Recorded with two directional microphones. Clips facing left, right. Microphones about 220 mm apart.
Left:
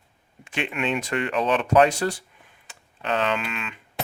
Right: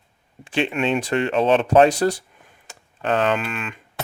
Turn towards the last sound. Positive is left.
turn(degrees=-50)  # may be behind; listen again after turning